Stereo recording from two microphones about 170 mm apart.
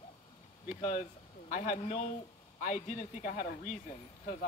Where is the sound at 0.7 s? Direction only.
50° left (ahead or behind).